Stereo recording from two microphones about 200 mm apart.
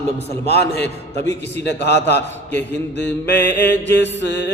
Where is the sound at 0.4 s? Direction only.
55° left (ahead or behind).